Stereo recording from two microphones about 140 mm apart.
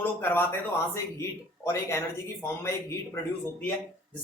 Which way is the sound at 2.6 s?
20° left (ahead or behind).